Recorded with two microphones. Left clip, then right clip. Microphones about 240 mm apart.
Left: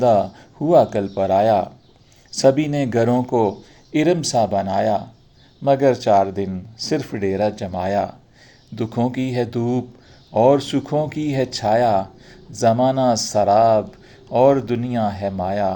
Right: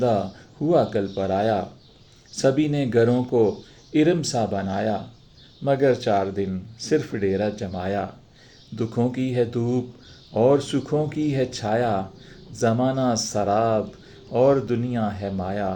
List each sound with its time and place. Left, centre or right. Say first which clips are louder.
0.7 s speech: left 6 dB; left